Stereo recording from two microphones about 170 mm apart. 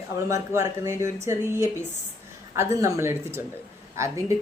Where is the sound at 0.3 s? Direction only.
20° right (ahead or behind).